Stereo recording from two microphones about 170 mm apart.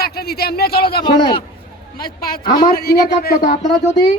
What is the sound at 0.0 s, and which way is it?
Speech, 70° left (ahead or behind).